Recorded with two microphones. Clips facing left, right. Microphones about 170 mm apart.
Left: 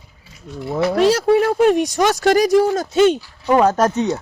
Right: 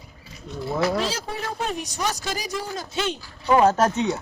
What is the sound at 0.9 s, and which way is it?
Speech, 65° left (ahead or behind).